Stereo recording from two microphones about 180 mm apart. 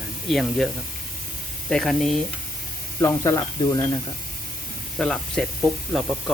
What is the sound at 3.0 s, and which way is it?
Speech, 20° left (ahead or behind).